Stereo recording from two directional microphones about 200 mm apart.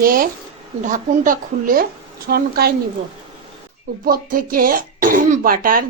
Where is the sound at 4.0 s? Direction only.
45° right (ahead or behind).